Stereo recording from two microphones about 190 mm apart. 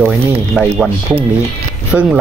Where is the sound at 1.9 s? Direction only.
5° right (ahead or behind).